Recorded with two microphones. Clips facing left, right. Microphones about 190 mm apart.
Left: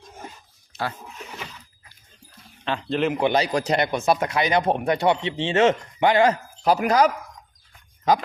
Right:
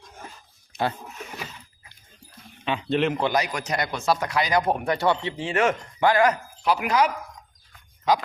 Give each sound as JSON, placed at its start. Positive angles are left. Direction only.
{"t": 0.7, "sound": "a sound", "side_deg": -20}
{"t": 2.6, "sound": "a man's voice", "side_deg": 0}
{"t": 3.3, "sound": "speech", "side_deg": 30}
{"t": 6.6, "sound": "speech", "side_deg": 40}